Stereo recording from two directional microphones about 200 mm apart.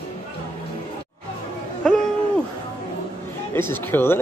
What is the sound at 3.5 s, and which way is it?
Speech, 10° left (ahead or behind).